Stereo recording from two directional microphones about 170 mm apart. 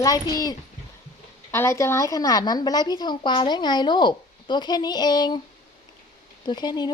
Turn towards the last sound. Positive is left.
turn(degrees=25)  # may be behind; listen again after turning